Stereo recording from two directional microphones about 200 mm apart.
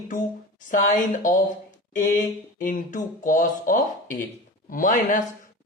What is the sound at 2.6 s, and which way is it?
Speech, 40° left (ahead or behind).